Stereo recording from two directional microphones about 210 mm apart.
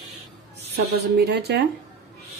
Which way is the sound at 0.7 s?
50° right (ahead or behind).